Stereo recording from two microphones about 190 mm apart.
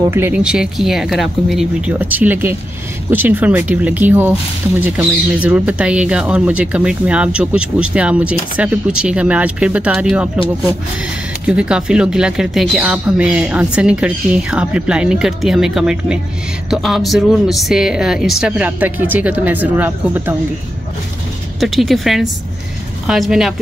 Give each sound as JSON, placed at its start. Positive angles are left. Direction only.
{"t": 0.1, "sound": "speech", "side_deg": -10}
{"t": 11.4, "sound": "speech", "side_deg": -5}
{"t": 21.5, "sound": "speech", "side_deg": 0}